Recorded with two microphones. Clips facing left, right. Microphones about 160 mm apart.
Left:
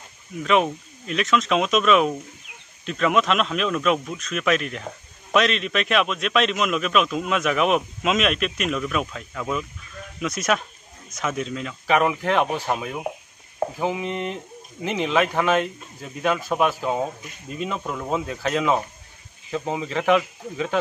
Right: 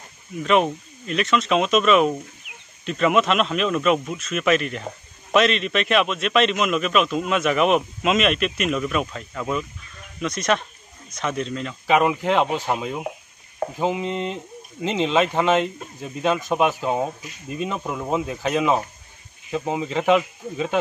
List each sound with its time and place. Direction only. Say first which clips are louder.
0.4 s speech: right 1 dB; centre (ahead or behind)
11.9 s speech: right 2 dB; 15° right (ahead or behind)